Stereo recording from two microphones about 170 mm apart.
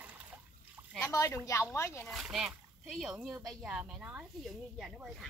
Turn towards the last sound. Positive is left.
turn(degrees=0)  # may be behind; listen again after turning